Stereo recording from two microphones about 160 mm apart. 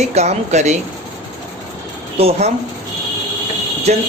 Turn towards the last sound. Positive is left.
turn(degrees=-40)  # may be behind; listen again after turning